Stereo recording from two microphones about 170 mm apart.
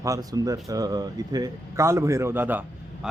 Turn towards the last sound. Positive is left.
turn(degrees=-10)  # may be behind; listen again after turning